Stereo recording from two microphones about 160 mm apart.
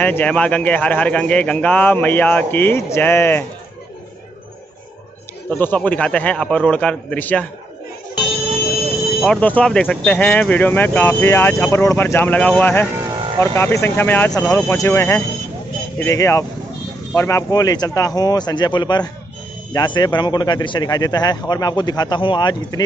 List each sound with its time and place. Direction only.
0.0 s speech: 10° left (ahead or behind)
5.5 s speech: 10° left (ahead or behind)
9.2 s speech: 5° left (ahead or behind); by 22.8 s 25° left (ahead or behind)